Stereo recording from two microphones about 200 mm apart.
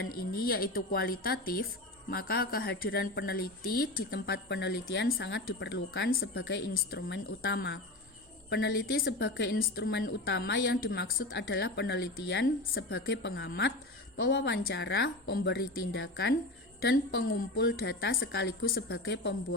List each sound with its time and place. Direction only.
0.1 s a woman's voice: 45° left (ahead or behind)